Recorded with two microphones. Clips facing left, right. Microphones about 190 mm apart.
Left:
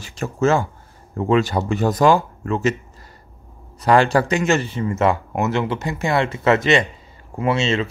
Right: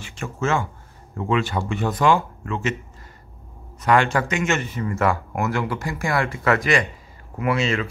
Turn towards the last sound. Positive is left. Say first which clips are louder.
# left 3 dB
turn(degrees=25)  # may be behind; listen again after turning